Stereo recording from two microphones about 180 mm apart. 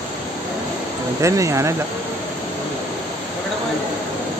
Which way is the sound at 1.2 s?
15° right (ahead or behind).